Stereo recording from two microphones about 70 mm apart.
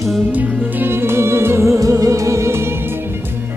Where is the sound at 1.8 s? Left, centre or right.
Right.